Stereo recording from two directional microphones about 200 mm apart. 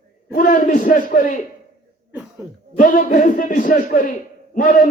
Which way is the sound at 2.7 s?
40° left (ahead or behind).